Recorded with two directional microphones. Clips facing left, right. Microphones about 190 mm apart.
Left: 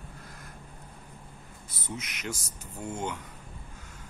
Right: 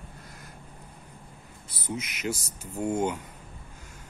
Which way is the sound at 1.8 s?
Centre (ahead or behind).